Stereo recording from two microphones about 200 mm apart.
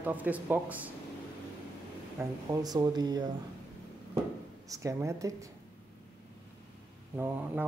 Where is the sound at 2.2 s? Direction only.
20° right (ahead or behind).